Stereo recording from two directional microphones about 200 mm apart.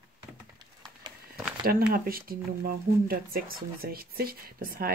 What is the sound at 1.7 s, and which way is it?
Speech, 45° right (ahead or behind).